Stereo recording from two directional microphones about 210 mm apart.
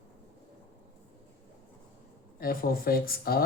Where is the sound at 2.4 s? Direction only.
45° left (ahead or behind).